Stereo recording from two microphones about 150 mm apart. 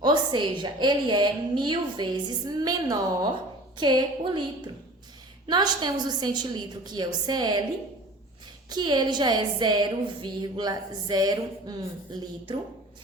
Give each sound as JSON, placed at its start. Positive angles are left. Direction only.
{"t": 0.0, "sound": "a woman's voice", "side_deg": -30}
{"t": 8.7, "sound": "a woman's voice", "side_deg": -30}